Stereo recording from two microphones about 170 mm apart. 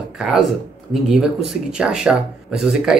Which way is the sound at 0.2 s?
5° right (ahead or behind).